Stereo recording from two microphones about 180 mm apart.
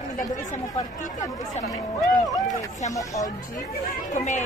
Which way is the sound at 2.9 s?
20° left (ahead or behind).